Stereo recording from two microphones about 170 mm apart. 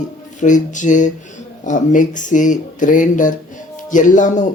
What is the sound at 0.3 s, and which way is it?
Speech, 45° left (ahead or behind).